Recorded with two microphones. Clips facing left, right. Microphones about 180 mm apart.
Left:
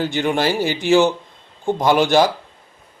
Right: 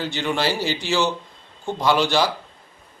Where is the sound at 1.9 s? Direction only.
50° left (ahead or behind).